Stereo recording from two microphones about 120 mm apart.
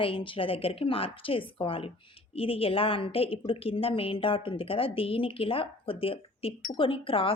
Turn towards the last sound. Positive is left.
turn(degrees=50)  # may be behind; listen again after turning